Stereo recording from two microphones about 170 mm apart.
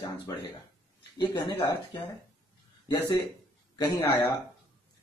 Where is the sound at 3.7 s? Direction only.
20° left (ahead or behind).